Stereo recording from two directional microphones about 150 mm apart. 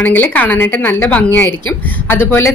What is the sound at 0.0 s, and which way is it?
A woman's voice, 10° left (ahead or behind).